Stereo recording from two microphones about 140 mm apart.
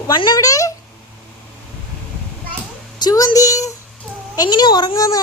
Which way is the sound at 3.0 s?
25° left (ahead or behind).